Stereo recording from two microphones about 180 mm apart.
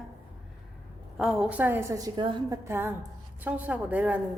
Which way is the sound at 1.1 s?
Centre (ahead or behind).